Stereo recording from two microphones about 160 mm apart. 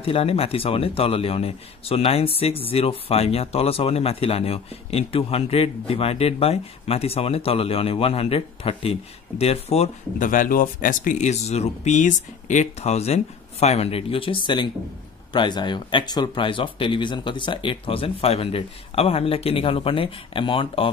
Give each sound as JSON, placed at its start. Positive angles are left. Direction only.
{"t": 0.0, "sound": "speech", "side_deg": 35}
{"t": 10.1, "sound": "speech", "side_deg": 55}